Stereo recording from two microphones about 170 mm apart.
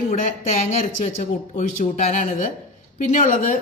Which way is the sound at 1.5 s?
45° left (ahead or behind).